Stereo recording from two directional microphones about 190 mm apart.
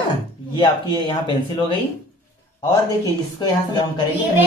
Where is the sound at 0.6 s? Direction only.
25° left (ahead or behind).